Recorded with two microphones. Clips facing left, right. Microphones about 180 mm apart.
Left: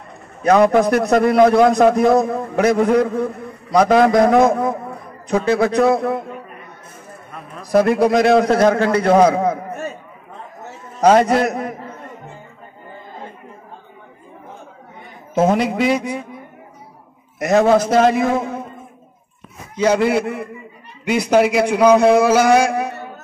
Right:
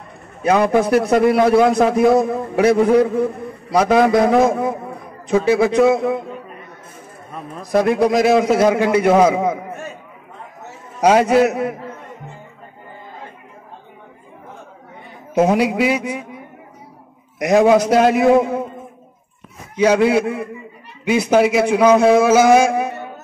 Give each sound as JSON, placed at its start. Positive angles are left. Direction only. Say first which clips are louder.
{"t": 0.5, "sound": "a man's voice", "louder": "left 2 dB", "side_deg": -5}
{"t": 7.6, "sound": "a man's voice", "louder": "left 1 dB", "side_deg": 0}
{"t": 11.0, "sound": "a man's voice", "louder": "even", "side_deg": -10}
{"t": 15.3, "sound": "a man's voice", "louder": "right 1 dB", "side_deg": -10}
{"t": 17.6, "sound": "a man's voice", "louder": "right 1 dB", "side_deg": -15}
{"t": 17.8, "sound": "a man's voice", "louder": "right 2 dB", "side_deg": -5}
{"t": 19.8, "sound": "a man's voice", "louder": "right 2 dB", "side_deg": -10}